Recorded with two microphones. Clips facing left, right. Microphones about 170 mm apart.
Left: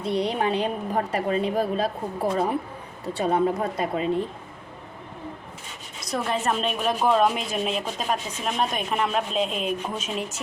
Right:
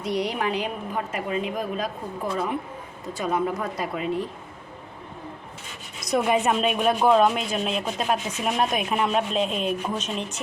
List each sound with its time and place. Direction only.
0.0 s a woman's voice: 30° left (ahead or behind)
6.1 s speech: 10° right (ahead or behind)